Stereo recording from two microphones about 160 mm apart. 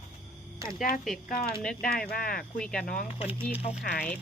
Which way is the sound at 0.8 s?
55° left (ahead or behind).